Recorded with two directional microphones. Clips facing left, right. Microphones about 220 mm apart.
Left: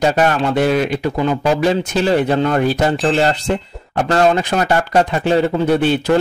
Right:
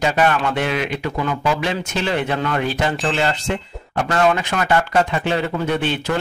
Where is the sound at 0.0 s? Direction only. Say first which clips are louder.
Left 3 dB; 40° left (ahead or behind).